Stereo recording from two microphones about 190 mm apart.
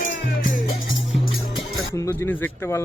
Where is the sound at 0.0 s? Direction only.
45° left (ahead or behind).